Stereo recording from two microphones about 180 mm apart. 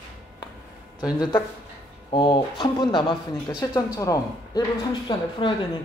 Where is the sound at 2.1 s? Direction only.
25° left (ahead or behind).